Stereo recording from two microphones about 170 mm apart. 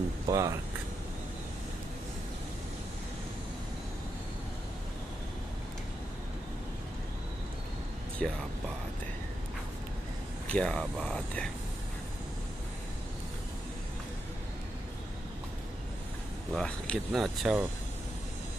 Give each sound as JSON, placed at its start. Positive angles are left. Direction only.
{"t": 0.3, "sound": "speech", "side_deg": -20}
{"t": 8.2, "sound": "speech", "side_deg": 5}
{"t": 10.5, "sound": "speech", "side_deg": 5}
{"t": 16.5, "sound": "speech", "side_deg": 5}